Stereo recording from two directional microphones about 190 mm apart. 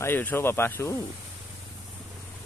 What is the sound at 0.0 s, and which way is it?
Speech, 10° left (ahead or behind).